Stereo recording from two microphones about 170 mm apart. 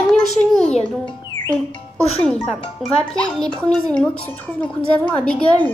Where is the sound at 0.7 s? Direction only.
40° left (ahead or behind).